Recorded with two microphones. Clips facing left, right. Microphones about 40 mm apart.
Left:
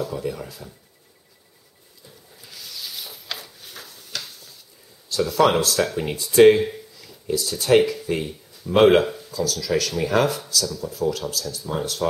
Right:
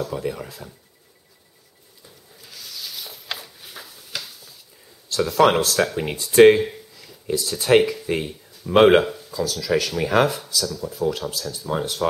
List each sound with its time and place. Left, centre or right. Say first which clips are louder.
0.1 s speech: right 1 dB; centre
2.4 s rub: even; centre
3.3 s a sound: right 1 dB; centre
5.1 s speech: right 1 dB; centre
6.3 s a sound: right 1 dB; centre
7.2 s speech: even; centre
11.1 s speech: even; right